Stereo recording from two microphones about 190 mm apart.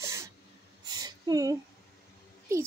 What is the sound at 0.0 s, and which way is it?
Snort, 15° right (ahead or behind).